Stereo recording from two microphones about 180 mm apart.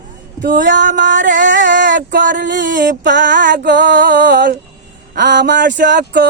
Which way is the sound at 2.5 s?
50° right (ahead or behind).